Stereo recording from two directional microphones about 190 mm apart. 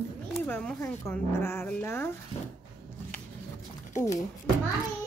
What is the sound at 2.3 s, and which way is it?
Speech, 35° left (ahead or behind).